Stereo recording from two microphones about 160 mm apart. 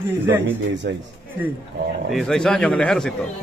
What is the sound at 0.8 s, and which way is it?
Speech, 90° right.